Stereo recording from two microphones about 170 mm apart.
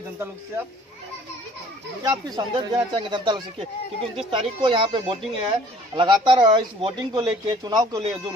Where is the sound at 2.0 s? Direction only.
25° right (ahead or behind).